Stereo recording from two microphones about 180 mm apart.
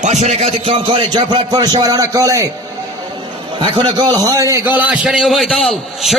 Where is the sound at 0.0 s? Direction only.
40° right (ahead or behind); by 2.5 s 20° right (ahead or behind).